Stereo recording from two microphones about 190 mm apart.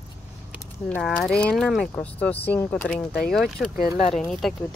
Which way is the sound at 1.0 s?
Centre (ahead or behind).